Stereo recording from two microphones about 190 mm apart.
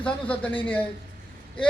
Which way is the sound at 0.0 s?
5° left (ahead or behind).